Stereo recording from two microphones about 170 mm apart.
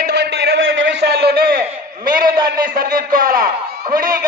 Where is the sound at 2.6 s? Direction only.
60° right (ahead or behind).